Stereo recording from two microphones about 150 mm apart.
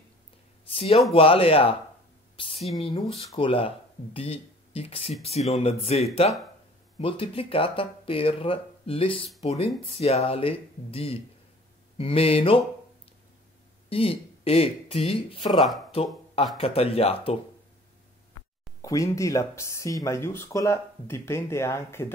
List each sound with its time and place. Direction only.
0.7 s speech: 40° left (ahead or behind)
2.3 s a sound: 40° left (ahead or behind)
3.3 s speech: 35° left (ahead or behind)
13.8 s speech: 40° left (ahead or behind)
15.9 s a sound: 40° left (ahead or behind)
16.5 s speech: 40° left (ahead or behind)
18.8 s speech: 20° left (ahead or behind)